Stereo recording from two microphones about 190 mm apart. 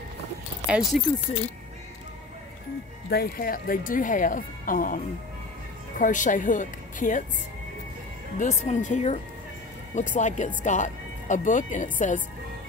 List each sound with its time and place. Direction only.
0.7 s speech: centre (ahead or behind)
3.1 s speech: 50° left (ahead or behind)
8.4 s speech: 40° left (ahead or behind)